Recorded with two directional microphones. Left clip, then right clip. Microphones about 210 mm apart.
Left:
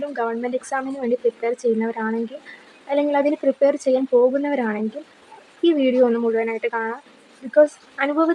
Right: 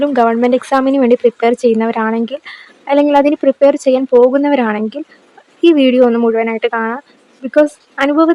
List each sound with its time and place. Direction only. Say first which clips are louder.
0.1 s a woman's voice: right 13 dB; 30° right (ahead or behind)